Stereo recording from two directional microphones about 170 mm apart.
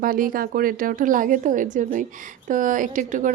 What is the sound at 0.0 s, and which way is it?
Speech, 55° right (ahead or behind).